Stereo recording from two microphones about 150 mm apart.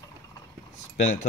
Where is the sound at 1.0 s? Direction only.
55° left (ahead or behind).